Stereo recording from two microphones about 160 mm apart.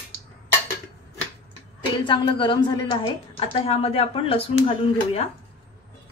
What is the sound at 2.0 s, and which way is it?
A woman's voice, 30° left (ahead or behind).